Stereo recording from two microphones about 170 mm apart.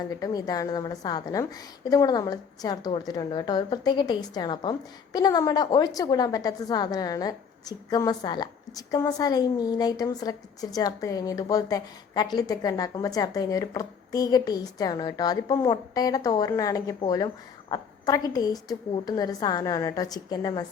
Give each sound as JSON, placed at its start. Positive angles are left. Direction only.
{"t": 0.2, "sound": "a woman's voice", "side_deg": 20}